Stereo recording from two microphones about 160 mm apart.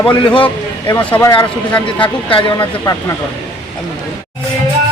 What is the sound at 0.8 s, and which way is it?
Speech, 15° left (ahead or behind).